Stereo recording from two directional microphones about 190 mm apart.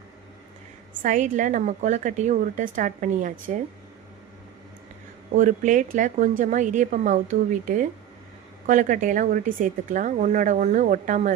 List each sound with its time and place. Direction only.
1.0 s a woman's voice: 45° right (ahead or behind)
5.3 s a woman's voice: 40° right (ahead or behind)